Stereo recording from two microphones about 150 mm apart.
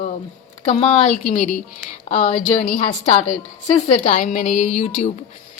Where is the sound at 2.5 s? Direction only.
55° left (ahead or behind).